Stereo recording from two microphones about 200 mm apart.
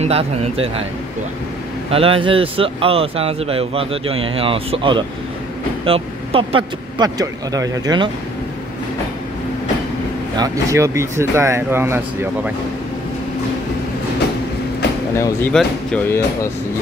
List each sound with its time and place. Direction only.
0.0 s speech: 30° right (ahead or behind)
1.9 s speech: 30° right (ahead or behind)
10.3 s speech: 15° right (ahead or behind)
15.1 s speech: 15° left (ahead or behind)